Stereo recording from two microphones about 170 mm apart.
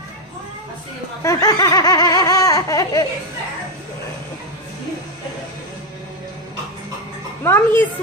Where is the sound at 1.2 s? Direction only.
20° left (ahead or behind).